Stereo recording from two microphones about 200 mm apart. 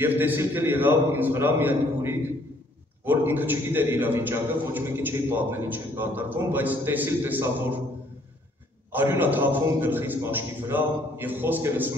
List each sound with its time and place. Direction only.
0.0 s a man's voice: 10° right (ahead or behind)
8.9 s a man's voice: 10° right (ahead or behind)